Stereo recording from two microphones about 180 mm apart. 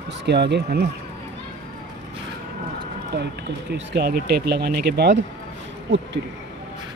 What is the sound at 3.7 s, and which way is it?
Speech, 65° right (ahead or behind).